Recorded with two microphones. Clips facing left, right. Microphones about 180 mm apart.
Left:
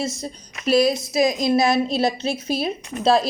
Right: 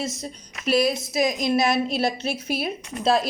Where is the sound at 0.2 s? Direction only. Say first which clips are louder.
Left 3 dB; 35° left (ahead or behind).